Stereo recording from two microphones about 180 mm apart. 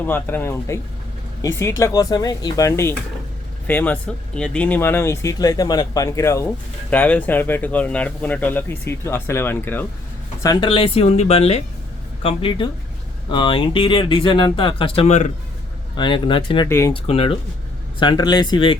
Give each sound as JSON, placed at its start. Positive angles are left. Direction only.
{"t": 0.0, "sound": "speech", "side_deg": 10}
{"t": 10.4, "sound": "speech", "side_deg": 25}
{"t": 16.0, "sound": "speech", "side_deg": 25}
{"t": 16.6, "sound": "speech", "side_deg": 15}
{"t": 16.9, "sound": "speech", "side_deg": 30}